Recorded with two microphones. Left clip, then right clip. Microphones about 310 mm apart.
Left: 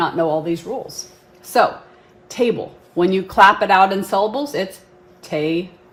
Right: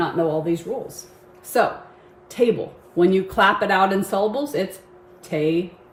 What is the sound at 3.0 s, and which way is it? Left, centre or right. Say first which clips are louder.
Speech: left 5 dB; centre.